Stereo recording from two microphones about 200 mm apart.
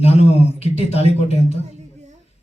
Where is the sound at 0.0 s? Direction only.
30° left (ahead or behind).